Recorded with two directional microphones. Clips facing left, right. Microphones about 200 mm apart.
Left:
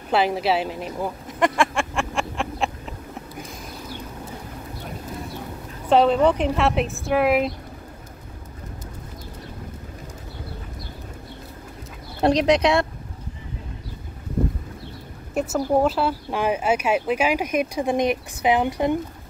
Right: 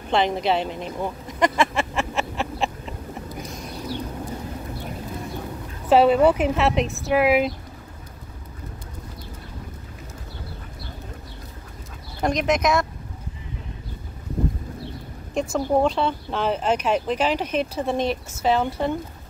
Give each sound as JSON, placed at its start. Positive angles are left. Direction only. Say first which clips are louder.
{"t": 0.1, "sound": "speech", "louder": "left 1 dB", "side_deg": 5}
{"t": 5.9, "sound": "a woman's voice", "louder": "right 1 dB", "side_deg": -5}
{"t": 12.2, "sound": "speech", "louder": "left 4 dB", "side_deg": 35}
{"t": 15.3, "sound": "speech", "louder": "left 1 dB", "side_deg": 5}